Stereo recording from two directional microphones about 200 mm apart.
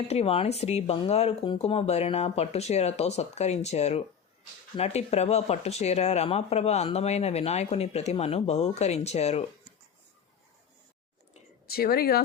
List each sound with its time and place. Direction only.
0.1 s speech: 30° left (ahead or behind)
11.7 s speech: 50° left (ahead or behind)